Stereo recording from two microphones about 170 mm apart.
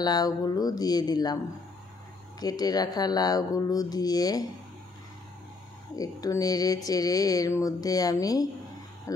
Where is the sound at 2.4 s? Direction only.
25° left (ahead or behind).